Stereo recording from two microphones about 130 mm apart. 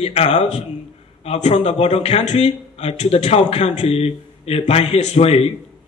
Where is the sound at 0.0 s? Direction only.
55° left (ahead or behind).